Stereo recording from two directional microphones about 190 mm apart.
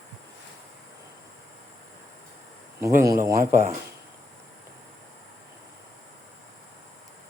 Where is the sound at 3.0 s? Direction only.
15° right (ahead or behind).